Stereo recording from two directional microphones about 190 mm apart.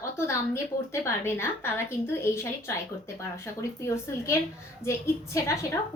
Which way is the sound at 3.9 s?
15° left (ahead or behind).